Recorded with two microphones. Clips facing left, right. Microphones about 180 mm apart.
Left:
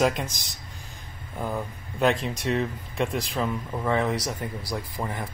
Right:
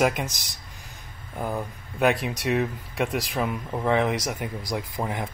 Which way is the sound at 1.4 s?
10° right (ahead or behind).